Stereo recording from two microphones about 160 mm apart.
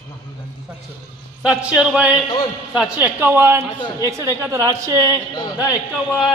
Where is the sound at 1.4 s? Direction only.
5° right (ahead or behind).